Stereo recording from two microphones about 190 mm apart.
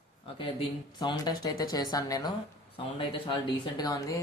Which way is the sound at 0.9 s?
20° left (ahead or behind).